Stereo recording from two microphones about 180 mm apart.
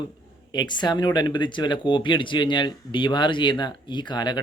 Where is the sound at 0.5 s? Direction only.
25° left (ahead or behind).